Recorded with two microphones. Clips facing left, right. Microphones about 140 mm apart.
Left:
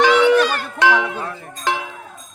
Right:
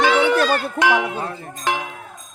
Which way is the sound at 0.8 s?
15° right (ahead or behind).